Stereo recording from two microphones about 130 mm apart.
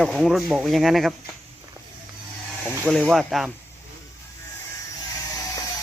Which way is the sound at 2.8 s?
5° left (ahead or behind).